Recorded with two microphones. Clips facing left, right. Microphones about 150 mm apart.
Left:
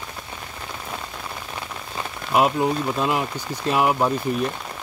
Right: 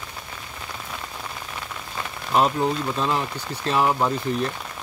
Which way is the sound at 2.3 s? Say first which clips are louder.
Left 1 dB; 10° left (ahead or behind).